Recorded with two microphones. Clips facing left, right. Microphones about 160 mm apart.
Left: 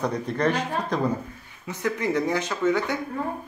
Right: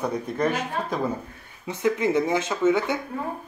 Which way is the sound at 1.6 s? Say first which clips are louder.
Right 3 dB; 20° right (ahead or behind).